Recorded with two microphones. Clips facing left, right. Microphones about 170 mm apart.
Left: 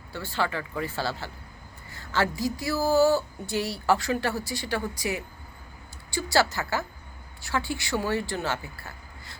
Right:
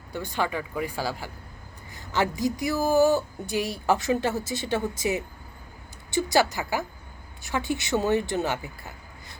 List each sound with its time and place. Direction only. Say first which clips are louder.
0.1 s a woman's voice: right 1 dB; 15° right (ahead or behind)